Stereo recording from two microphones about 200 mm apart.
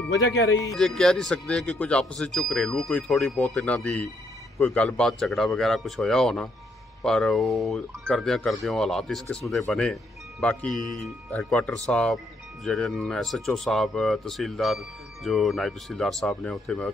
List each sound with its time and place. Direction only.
0.5 s speech: 15° left (ahead or behind)
0.7 s speech: centre (ahead or behind)